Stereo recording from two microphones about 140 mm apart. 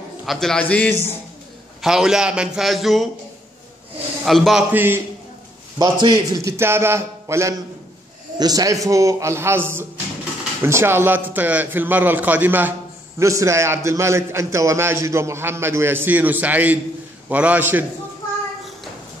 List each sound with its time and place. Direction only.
0.2 s a man's voice: centre (ahead or behind)
1.8 s a man's voice: 5° right (ahead or behind)
4.2 s a man's voice: centre (ahead or behind)
4.6 s a man's voice: 15° right (ahead or behind)
5.8 s a man's voice: 30° right (ahead or behind); by 17.8 s 15° right (ahead or behind)